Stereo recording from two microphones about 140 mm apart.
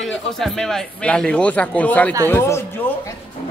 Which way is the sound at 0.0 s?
Centre (ahead or behind).